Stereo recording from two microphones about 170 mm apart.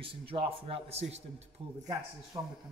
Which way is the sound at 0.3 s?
30° right (ahead or behind).